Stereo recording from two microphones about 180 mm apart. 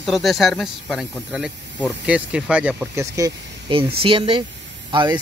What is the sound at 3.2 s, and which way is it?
Speech, 20° right (ahead or behind).